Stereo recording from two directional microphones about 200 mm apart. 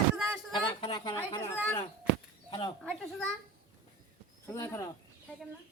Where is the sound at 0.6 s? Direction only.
20° left (ahead or behind).